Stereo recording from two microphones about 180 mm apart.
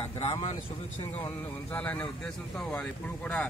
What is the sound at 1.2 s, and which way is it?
Speech, 10° left (ahead or behind).